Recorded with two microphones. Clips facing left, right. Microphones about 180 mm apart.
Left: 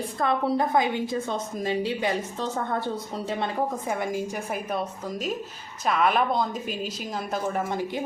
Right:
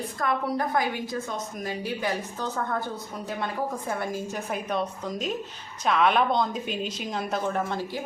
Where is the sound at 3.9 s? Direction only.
15° left (ahead or behind).